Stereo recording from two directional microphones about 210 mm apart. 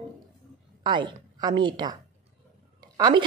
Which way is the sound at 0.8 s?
20° right (ahead or behind).